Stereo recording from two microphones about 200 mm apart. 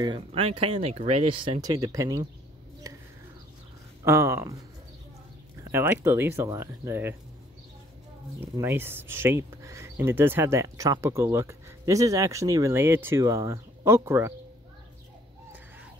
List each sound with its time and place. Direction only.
0.0 s speech: 25° right (ahead or behind)
4.0 s speech: 15° right (ahead or behind)
5.6 s speech: 10° right (ahead or behind)
8.4 s speech: 10° right (ahead or behind)